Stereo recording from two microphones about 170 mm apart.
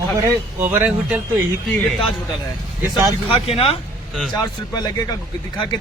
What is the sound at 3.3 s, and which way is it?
Speech, 35° left (ahead or behind).